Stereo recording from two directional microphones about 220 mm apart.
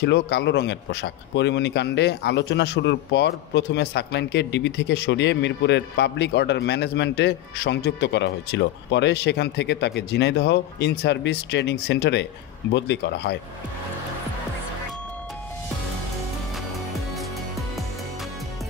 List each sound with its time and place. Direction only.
0.0 s a man's voice: 50° left (ahead or behind)